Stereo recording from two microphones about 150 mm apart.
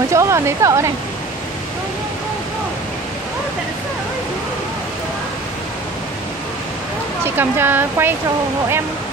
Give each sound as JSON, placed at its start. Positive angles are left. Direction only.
{"t": 0.1, "sound": "speech", "side_deg": -20}
{"t": 7.2, "sound": "speech", "side_deg": -15}